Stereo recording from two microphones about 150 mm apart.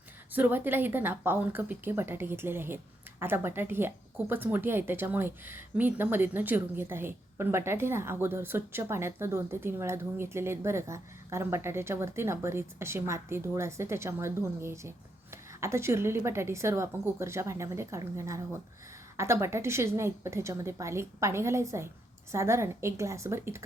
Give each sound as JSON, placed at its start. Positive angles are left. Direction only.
{"t": 0.3, "sound": "a woman's voice", "side_deg": -10}